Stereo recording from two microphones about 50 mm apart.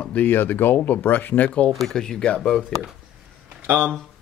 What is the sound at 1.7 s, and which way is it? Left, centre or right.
Speech, centre.